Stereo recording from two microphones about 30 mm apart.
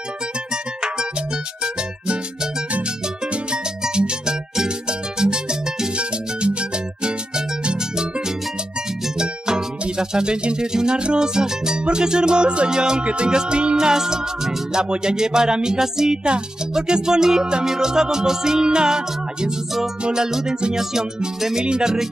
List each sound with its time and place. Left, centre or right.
4.3 s music: right
7.0 s music: right
9.2 s music: right
12.7 s music: right
13.0 s music: right
13.3 s music: right
15.8 s a woman's voice: centre
16.7 s music: right